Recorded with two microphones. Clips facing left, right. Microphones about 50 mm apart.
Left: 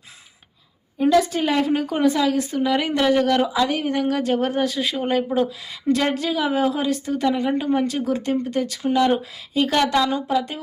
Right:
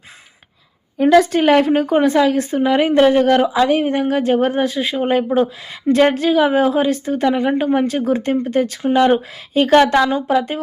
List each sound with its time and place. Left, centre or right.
0.9 s a woman's voice: right